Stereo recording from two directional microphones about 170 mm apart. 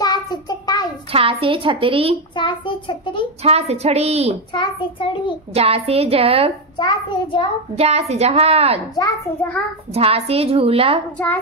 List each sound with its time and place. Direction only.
0.0 s child singing: 25° left (ahead or behind)
1.1 s a woman's voice: 35° right (ahead or behind)
2.3 s a child's voice: 30° left (ahead or behind)
3.4 s a woman's voice: 40° right (ahead or behind)
4.5 s a child's voice: 30° left (ahead or behind)
5.5 s a woman's voice: 35° right (ahead or behind)
6.8 s a child's voice: 25° left (ahead or behind)
7.7 s a woman's voice: 40° right (ahead or behind)
8.9 s a child's voice: 20° left (ahead or behind)
9.9 s a woman's voice: 35° right (ahead or behind)